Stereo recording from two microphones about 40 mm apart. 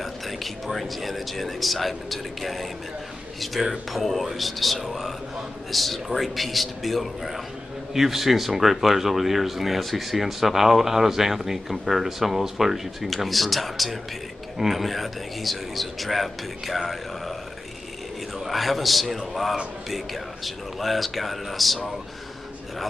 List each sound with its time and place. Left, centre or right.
0.0 s speech: centre
18.4 s speech: centre